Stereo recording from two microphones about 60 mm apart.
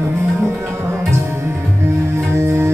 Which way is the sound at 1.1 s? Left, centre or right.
Right.